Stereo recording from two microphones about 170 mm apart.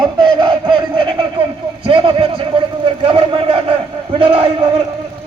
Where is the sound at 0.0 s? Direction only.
25° right (ahead or behind).